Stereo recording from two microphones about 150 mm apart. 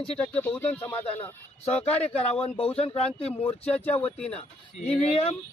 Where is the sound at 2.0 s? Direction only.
40° left (ahead or behind).